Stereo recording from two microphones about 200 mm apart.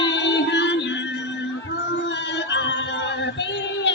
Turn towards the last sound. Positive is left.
turn(degrees=65)  # may be behind; listen again after turning